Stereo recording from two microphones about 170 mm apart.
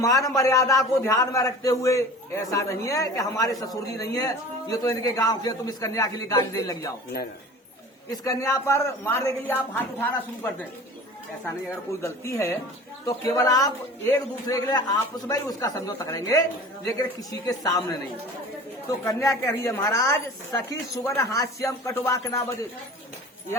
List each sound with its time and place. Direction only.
0.0 s a man's voice: 20° left (ahead or behind)
8.1 s a woman's voice: 20° left (ahead or behind)
11.4 s a woman's voice: 15° left (ahead or behind)
19.0 s a woman's voice: 15° left (ahead or behind)